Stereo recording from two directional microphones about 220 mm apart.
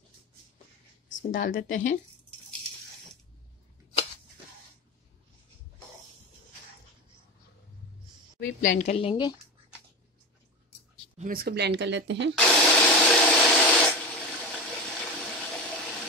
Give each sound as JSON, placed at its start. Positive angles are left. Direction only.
{"t": 1.3, "sound": "a woman's voice", "side_deg": 35}
{"t": 8.4, "sound": "a woman's voice", "side_deg": 35}
{"t": 11.1, "sound": "speech", "side_deg": -40}
{"t": 12.4, "sound": "a sound", "side_deg": 0}